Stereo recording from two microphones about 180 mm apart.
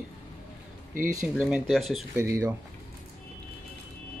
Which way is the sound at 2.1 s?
15° right (ahead or behind).